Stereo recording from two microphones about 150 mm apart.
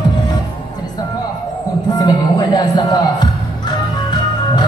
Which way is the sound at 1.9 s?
25° left (ahead or behind).